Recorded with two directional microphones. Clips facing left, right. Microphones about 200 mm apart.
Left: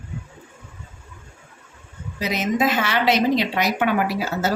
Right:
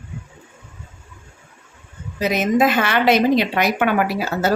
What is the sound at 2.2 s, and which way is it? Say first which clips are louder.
A woman's voice: right 5 dB; 55° right (ahead or behind).